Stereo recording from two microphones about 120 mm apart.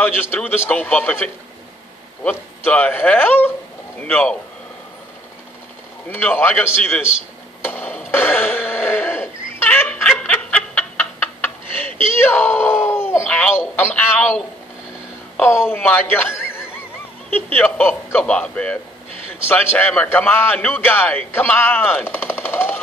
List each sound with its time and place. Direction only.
0.0 s a man's voice: 15° left (ahead or behind)
2.6 s a man's voice: 15° left (ahead or behind)
6.0 s a man's voice: 15° left (ahead or behind)
7.6 s a sound: 15° left (ahead or behind)
12.1 s a sound: 20° left (ahead or behind)
13.7 s a man's voice: 15° left (ahead or behind)
15.3 s a man's voice: 20° left (ahead or behind)